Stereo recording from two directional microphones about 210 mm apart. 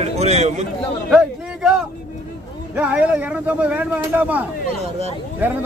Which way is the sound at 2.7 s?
5° right (ahead or behind).